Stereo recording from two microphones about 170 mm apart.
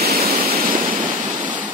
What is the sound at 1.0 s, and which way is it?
Waves, 50° right (ahead or behind).